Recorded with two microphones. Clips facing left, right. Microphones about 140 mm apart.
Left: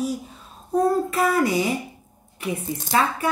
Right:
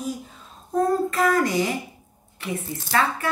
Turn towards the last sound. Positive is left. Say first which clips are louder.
# left 1 dB
turn(degrees=15)  # may be behind; listen again after turning